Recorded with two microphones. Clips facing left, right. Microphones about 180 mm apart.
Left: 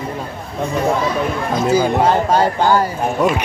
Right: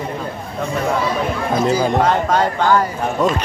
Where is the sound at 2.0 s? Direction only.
30° left (ahead or behind).